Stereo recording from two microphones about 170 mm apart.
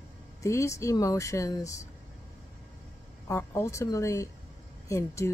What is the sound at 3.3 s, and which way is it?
Speech, 15° left (ahead or behind).